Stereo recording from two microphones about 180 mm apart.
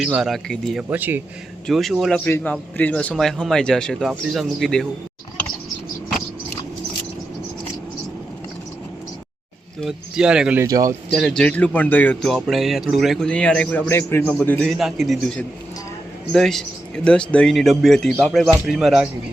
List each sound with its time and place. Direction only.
0.0 s speech: centre (ahead or behind)
9.8 s speech: 5° right (ahead or behind)
10.7 s speech: 20° right (ahead or behind)
11.1 s speech: centre (ahead or behind)